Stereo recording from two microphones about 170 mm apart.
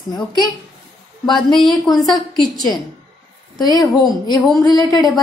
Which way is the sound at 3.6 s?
20° left (ahead or behind).